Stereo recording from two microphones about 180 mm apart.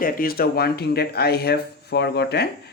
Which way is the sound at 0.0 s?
55° left (ahead or behind).